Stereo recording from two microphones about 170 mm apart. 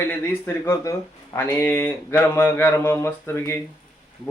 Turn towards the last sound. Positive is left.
turn(degrees=15)  # may be behind; listen again after turning